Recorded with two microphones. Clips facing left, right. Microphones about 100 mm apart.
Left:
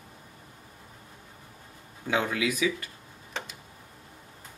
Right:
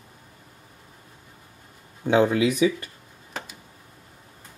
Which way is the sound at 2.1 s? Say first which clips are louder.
Right 8 dB; 30° right (ahead or behind).